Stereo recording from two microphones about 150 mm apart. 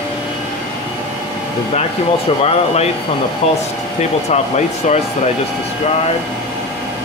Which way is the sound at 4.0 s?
50° left (ahead or behind).